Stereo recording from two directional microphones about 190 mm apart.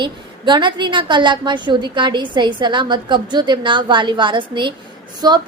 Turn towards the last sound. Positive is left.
turn(degrees=-20)  # may be behind; listen again after turning